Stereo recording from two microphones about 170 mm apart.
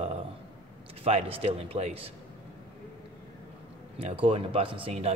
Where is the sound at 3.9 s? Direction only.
35° right (ahead or behind).